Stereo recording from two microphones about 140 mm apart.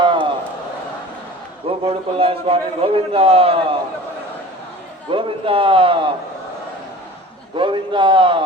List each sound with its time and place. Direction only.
0.0 s a sound: 35° right (ahead or behind)
1.8 s a man's voice: 40° right (ahead or behind)
5.1 s a man's voice: 40° right (ahead or behind)
7.5 s a man's voice: 35° right (ahead or behind)